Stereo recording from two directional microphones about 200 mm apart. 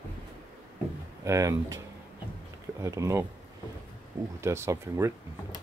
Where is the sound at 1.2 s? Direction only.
15° right (ahead or behind).